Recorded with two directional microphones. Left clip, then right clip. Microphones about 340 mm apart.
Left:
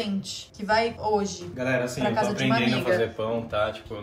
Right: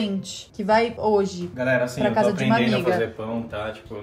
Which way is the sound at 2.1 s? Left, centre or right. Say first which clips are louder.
Right 4 dB; centre.